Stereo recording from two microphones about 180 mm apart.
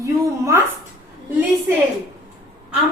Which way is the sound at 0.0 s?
15° right (ahead or behind).